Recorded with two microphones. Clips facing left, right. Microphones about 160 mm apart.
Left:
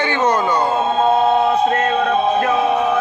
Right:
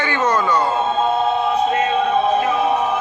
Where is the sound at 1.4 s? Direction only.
55° left (ahead or behind).